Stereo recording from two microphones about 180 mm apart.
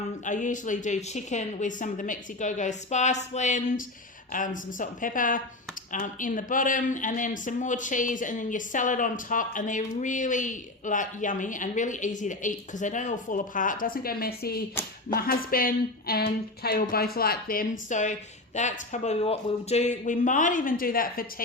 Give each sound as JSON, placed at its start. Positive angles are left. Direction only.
{"t": 0.3, "sound": "speech", "side_deg": 45}